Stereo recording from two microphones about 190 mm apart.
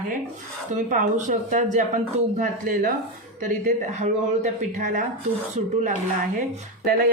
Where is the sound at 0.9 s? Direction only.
40° right (ahead or behind).